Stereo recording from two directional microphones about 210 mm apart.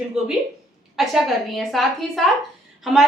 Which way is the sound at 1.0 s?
Centre (ahead or behind).